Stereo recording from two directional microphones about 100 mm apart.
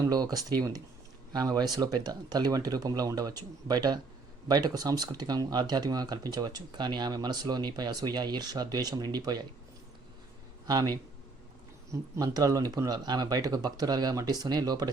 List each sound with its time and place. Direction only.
0.0 s speech: 40° right (ahead or behind)
10.7 s speech: 45° right (ahead or behind)